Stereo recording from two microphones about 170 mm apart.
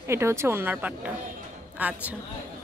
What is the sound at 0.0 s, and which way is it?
A woman's voice, 15° right (ahead or behind).